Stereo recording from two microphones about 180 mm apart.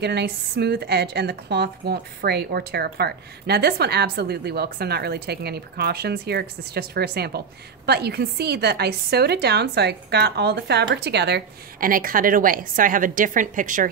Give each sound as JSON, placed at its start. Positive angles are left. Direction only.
{"t": 0.0, "sound": "speech", "side_deg": -65}